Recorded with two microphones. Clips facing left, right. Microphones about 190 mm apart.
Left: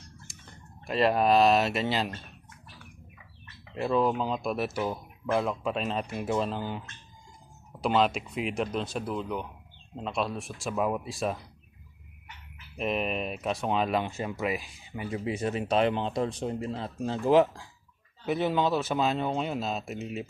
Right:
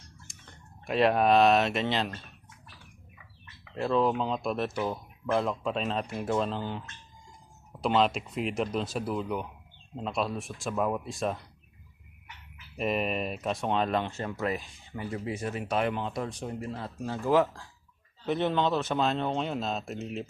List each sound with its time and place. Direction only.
0.3 s a sound: centre (ahead or behind)
0.9 s speech: centre (ahead or behind)
3.8 s speech: 5° left (ahead or behind)
12.7 s speech: centre (ahead or behind); by 17.7 s 15° left (ahead or behind)
18.3 s speech: 5° left (ahead or behind)